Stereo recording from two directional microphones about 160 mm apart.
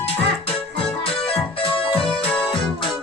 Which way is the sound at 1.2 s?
35° left (ahead or behind).